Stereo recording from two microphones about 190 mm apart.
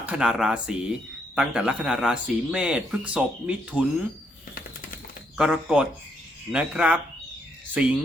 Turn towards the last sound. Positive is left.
turn(degrees=-5)  # may be behind; listen again after turning